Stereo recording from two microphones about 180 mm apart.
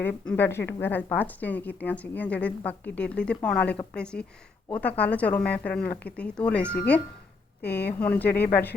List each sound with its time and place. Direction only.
0.0 s a woman's voice: 10° left (ahead or behind)
5.9 s speech: 60° left (ahead or behind)
6.1 s a woman's voice: 5° left (ahead or behind)
8.3 s speech: 60° left (ahead or behind)